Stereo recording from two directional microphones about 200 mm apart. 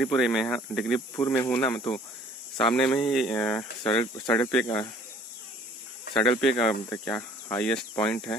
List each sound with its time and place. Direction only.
0.0 s speech: centre (ahead or behind)
1.1 s speech: 15° left (ahead or behind)
4.6 s speech: 15° left (ahead or behind)
6.1 s speech: 5° left (ahead or behind)